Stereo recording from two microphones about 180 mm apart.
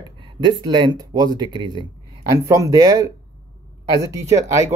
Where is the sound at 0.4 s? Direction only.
25° right (ahead or behind).